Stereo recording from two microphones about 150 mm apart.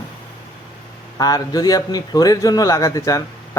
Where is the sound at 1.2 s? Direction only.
25° left (ahead or behind).